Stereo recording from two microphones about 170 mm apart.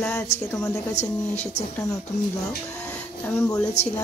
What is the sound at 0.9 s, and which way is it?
Speech, 40° left (ahead or behind).